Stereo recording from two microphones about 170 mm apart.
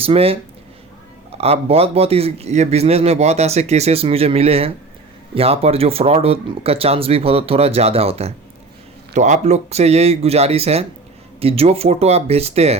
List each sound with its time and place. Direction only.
0.0 s speech: 35° right (ahead or behind)
1.4 s speech: 35° right (ahead or behind)